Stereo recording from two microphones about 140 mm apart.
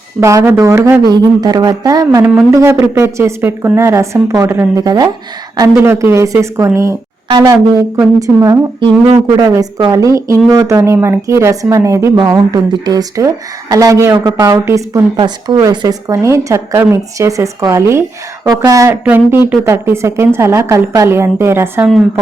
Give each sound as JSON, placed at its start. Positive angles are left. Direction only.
{"t": 0.2, "sound": "a woman's voice", "side_deg": -20}
{"t": 15.1, "sound": "a woman's voice", "side_deg": -30}